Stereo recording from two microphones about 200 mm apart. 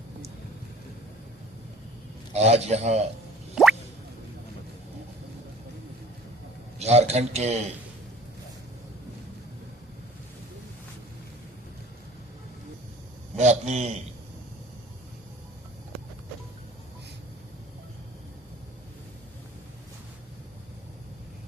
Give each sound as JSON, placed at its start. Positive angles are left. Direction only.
{"t": 2.3, "sound": "a man's voice", "side_deg": -35}
{"t": 3.5, "sound": "music", "side_deg": 0}
{"t": 6.7, "sound": "a man's voice", "side_deg": -30}
{"t": 13.3, "sound": "a man's voice", "side_deg": -35}